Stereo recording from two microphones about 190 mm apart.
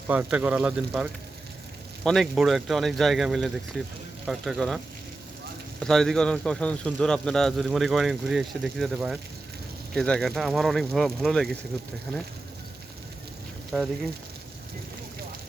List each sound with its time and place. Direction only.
0.1 s speech: 5° right (ahead or behind)
2.0 s a man's voice: centre (ahead or behind)
5.8 s a man's voice: centre (ahead or behind)
13.7 s a man's voice: centre (ahead or behind)